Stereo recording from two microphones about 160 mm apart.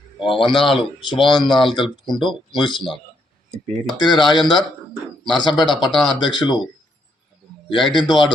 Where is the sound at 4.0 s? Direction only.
Centre (ahead or behind).